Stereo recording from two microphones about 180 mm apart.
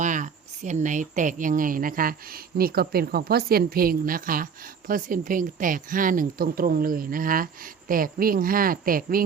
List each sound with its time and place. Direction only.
0.0 s speech: 45° right (ahead or behind)